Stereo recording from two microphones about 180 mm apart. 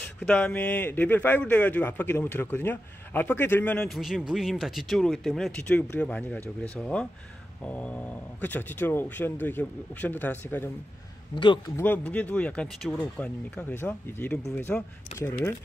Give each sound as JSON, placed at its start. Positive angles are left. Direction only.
{"t": 0.0, "sound": "speech", "side_deg": 5}
{"t": 11.3, "sound": "a man's voice", "side_deg": 25}
{"t": 11.7, "sound": "speech", "side_deg": 10}